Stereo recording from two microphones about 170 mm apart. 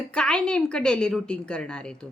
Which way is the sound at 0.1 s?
5° left (ahead or behind).